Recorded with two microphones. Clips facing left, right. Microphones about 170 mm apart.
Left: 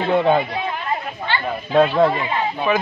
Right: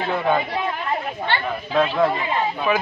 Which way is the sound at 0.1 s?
25° left (ahead or behind).